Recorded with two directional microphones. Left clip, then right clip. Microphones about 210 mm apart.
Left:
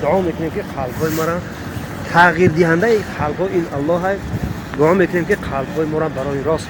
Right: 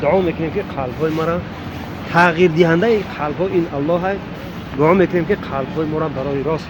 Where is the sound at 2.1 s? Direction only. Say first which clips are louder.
Left 1 dB; 35° right (ahead or behind).